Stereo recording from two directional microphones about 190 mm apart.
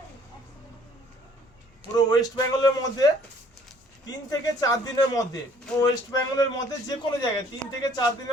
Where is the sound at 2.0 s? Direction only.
20° left (ahead or behind).